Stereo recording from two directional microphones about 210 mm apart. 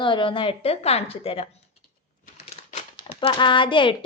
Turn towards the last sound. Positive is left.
turn(degrees=25)  # may be behind; listen again after turning